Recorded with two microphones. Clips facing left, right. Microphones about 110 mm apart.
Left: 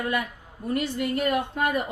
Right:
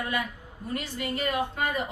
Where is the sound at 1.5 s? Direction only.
55° left (ahead or behind).